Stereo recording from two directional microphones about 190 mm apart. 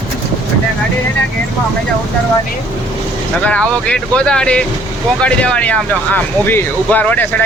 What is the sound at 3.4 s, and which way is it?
Speech, 5° left (ahead or behind).